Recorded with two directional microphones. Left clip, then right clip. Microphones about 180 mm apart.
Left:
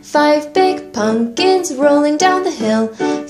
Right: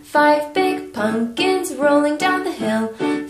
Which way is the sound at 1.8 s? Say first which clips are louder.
Left 3 dB; 45° left (ahead or behind).